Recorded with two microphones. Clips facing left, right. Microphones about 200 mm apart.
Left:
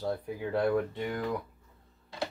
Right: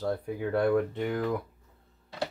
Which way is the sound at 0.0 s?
60° right (ahead or behind).